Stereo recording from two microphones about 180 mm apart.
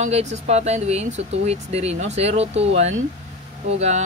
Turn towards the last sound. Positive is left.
turn(degrees=-35)  # may be behind; listen again after turning